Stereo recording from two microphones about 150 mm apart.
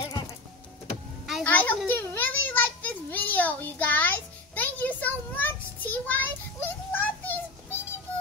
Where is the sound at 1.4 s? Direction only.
10° left (ahead or behind).